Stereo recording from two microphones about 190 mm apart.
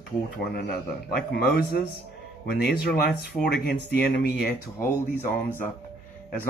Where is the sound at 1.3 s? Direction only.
55° left (ahead or behind).